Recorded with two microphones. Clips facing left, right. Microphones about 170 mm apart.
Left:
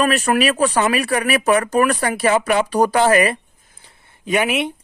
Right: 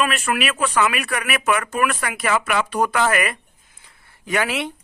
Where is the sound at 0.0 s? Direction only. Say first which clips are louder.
Left 5 dB; 40° left (ahead or behind).